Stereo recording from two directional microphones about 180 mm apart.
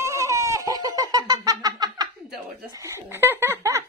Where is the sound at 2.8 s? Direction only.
15° right (ahead or behind).